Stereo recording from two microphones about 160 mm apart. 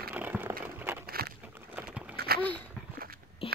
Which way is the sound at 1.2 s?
75° right (ahead or behind).